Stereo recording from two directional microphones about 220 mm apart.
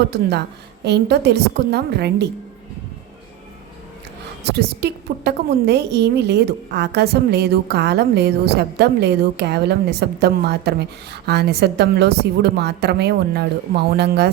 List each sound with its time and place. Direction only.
0.1 s a woman's voice: 50° right (ahead or behind)
4.5 s a woman's voice: 50° right (ahead or behind)